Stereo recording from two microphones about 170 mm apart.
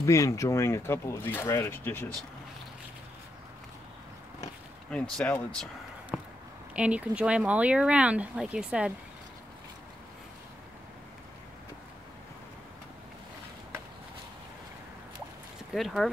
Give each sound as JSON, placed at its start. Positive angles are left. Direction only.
{"t": 0.0, "sound": "speech", "side_deg": 20}
{"t": 4.9, "sound": "speech", "side_deg": 5}
{"t": 6.1, "sound": "a sound", "side_deg": 0}
{"t": 6.7, "sound": "speech", "side_deg": -5}
{"t": 15.7, "sound": "speech", "side_deg": 0}